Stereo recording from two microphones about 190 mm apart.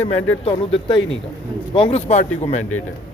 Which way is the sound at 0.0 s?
30° left (ahead or behind).